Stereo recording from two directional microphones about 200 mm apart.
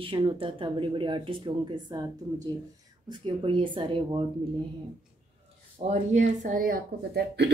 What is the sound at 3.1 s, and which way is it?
A woman's voice, 25° right (ahead or behind).